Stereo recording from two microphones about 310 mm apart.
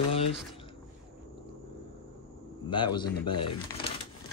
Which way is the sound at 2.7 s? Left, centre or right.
Centre.